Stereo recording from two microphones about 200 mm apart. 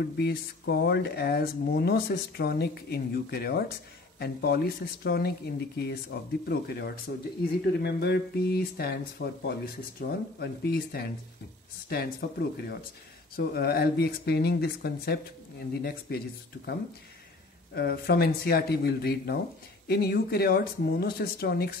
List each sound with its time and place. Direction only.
0.0 s speech: 50° left (ahead or behind)
17.7 s speech: 50° left (ahead or behind)